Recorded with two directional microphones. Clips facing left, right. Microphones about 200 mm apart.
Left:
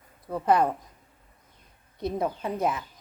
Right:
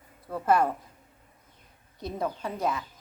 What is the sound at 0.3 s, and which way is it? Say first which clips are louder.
Speech: left 1 dB; 20° left (ahead or behind).